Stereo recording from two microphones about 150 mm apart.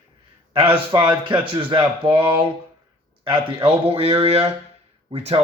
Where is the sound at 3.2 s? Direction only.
35° right (ahead or behind).